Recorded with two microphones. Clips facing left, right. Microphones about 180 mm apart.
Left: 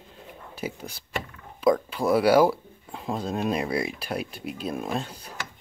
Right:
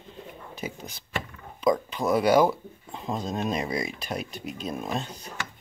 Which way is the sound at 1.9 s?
5° left (ahead or behind).